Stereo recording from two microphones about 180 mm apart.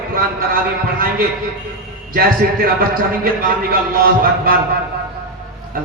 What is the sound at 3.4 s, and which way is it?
A man's voice, 55° right (ahead or behind).